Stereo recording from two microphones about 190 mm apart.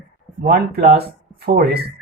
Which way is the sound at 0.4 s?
55° right (ahead or behind).